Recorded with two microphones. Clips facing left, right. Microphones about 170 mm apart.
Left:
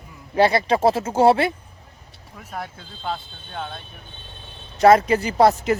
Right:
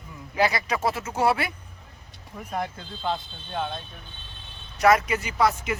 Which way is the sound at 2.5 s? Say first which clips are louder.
Right 3 dB; 5° left (ahead or behind).